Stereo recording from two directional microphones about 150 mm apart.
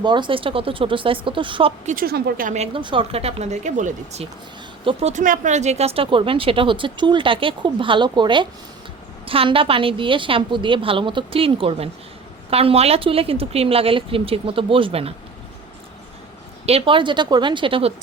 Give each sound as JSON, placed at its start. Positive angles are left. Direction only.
{"t": 0.0, "sound": "a woman's voice", "side_deg": -30}
{"t": 1.9, "sound": "a woman's voice", "side_deg": -80}
{"t": 2.7, "sound": "a woman's voice", "side_deg": -35}
{"t": 5.2, "sound": "a woman's voice", "side_deg": -60}
{"t": 16.6, "sound": "a woman's voice", "side_deg": -40}